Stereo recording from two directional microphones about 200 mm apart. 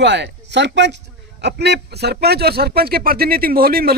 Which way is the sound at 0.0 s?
60° right (ahead or behind).